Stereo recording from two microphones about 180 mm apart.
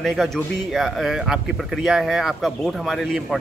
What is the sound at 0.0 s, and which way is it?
Speech, centre (ahead or behind).